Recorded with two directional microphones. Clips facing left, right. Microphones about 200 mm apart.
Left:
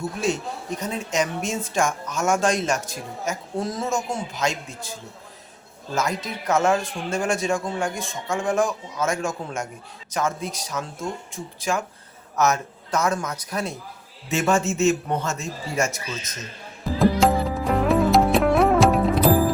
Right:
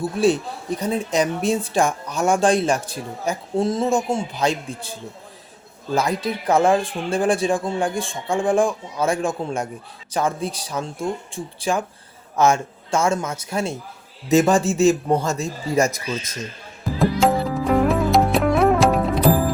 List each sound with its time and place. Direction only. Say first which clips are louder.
0.0 s a man's voice: right 6 dB; 35° right (ahead or behind)
17.0 s music: even; centre (ahead or behind)